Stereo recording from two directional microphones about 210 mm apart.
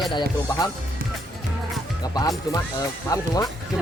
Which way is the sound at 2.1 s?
20° left (ahead or behind).